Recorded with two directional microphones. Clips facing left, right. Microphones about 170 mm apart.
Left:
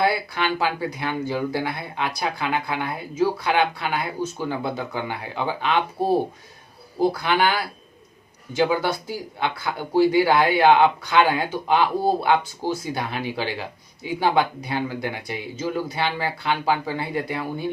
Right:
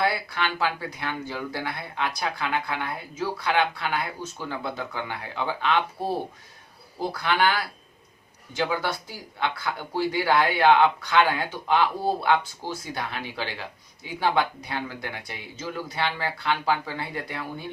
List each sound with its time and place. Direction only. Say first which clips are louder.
0.0 s speech: left 4 dB; 15° left (ahead or behind)
7.2 s speech: left 2 dB; 15° left (ahead or behind)